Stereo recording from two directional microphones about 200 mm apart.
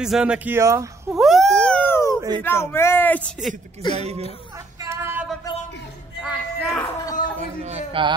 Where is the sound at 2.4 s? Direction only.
10° left (ahead or behind).